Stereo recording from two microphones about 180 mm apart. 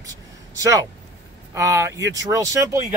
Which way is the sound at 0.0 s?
20° right (ahead or behind).